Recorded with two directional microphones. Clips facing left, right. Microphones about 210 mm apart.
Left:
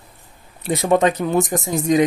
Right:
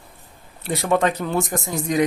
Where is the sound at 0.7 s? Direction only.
20° left (ahead or behind).